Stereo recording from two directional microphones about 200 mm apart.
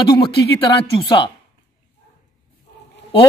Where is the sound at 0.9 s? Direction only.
25° left (ahead or behind).